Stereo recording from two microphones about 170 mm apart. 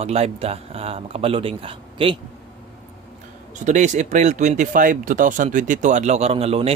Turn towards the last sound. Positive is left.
turn(degrees=-35)  # may be behind; listen again after turning